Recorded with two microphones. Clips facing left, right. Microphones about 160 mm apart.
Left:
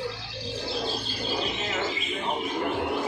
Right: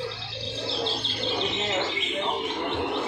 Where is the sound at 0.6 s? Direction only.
30° right (ahead or behind).